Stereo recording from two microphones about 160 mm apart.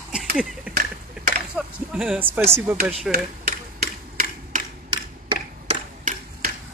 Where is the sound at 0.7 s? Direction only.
10° right (ahead or behind).